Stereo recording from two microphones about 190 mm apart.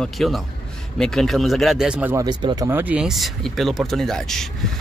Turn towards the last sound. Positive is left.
turn(degrees=0)  # may be behind; listen again after turning